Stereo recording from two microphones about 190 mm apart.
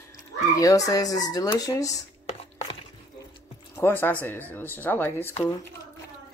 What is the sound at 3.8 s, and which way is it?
Speech, 10° left (ahead or behind).